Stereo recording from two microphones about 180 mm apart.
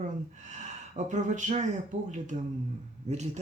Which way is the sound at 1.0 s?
45° right (ahead or behind).